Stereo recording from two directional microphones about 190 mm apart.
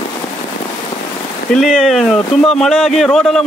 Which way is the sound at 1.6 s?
Centre (ahead or behind).